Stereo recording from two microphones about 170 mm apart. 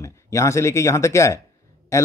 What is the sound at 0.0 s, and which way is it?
A man's voice, 15° left (ahead or behind).